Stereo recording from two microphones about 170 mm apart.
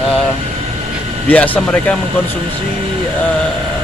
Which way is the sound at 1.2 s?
10° left (ahead or behind).